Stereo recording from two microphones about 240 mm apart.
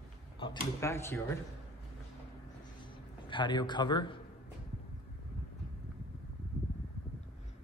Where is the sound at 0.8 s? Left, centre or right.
Centre.